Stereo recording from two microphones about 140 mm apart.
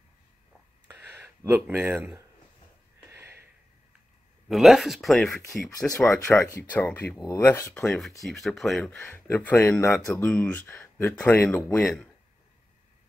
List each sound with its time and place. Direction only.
0.9 s speech: 15° right (ahead or behind)
3.1 s a sound: 15° right (ahead or behind)
4.5 s speech: centre (ahead or behind); by 11.8 s 15° left (ahead or behind)
11.8 s speech: 5° left (ahead or behind)